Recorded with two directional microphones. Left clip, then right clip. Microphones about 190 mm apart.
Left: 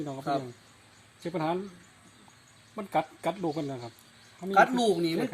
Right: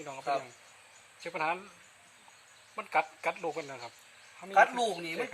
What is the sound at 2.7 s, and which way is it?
Speech, 50° left (ahead or behind).